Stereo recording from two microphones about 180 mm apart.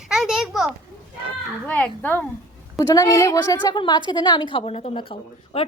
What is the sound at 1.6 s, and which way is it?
A woman's voice, 10° left (ahead or behind).